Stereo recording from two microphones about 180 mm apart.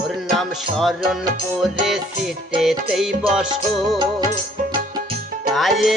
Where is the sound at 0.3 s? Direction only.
Centre (ahead or behind).